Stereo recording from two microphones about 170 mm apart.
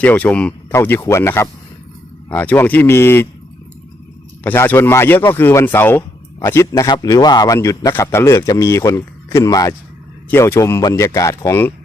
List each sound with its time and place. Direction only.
0.0 s speech: 10° left (ahead or behind)
4.4 s a man's voice: 10° left (ahead or behind)